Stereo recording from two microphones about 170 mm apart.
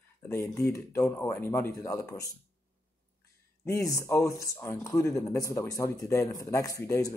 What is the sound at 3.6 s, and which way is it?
Speech, 20° left (ahead or behind).